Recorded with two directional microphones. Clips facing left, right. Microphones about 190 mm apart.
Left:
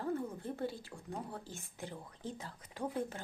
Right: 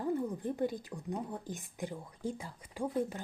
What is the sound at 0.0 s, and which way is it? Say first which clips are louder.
Speech: right 4 dB; 15° right (ahead or behind).